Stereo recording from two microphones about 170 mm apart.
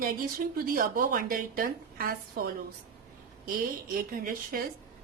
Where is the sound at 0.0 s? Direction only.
55° right (ahead or behind).